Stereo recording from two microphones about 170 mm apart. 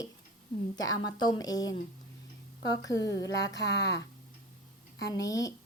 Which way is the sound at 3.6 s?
85° left.